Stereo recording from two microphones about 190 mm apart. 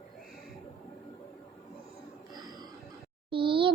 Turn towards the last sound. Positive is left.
turn(degrees=-25)  # may be behind; listen again after turning